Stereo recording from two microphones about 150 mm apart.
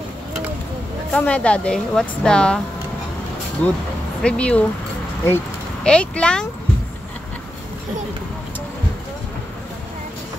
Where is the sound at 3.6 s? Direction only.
10° left (ahead or behind).